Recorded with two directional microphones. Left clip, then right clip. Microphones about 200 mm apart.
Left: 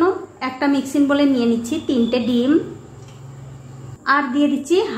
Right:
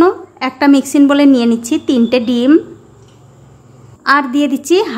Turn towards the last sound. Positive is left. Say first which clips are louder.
# right 5 dB
turn(degrees=-40)  # may be behind; listen again after turning